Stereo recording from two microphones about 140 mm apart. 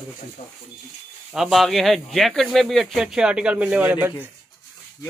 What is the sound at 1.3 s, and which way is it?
Speech, centre (ahead or behind).